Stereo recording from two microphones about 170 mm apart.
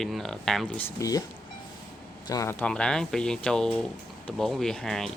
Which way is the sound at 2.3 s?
15° left (ahead or behind).